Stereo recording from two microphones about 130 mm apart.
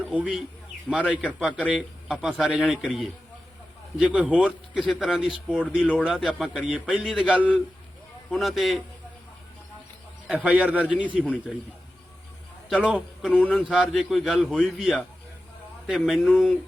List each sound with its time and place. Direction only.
0.1 s a man's voice: 10° right (ahead or behind)
10.2 s a man's voice: 10° right (ahead or behind)
12.6 s a man's voice: 5° right (ahead or behind)
13.3 s speech: 10° left (ahead or behind)
13.6 s a man's voice: 5° right (ahead or behind)
14.4 s speech: 10° left (ahead or behind)
14.7 s a man's voice: 10° right (ahead or behind)